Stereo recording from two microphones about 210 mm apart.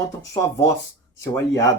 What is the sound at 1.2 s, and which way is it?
Speech, 15° left (ahead or behind).